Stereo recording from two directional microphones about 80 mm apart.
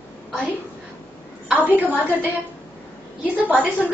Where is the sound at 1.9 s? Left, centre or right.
Centre.